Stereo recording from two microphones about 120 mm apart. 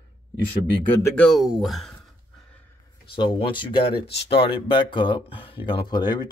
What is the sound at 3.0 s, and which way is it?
Speech, 40° left (ahead or behind).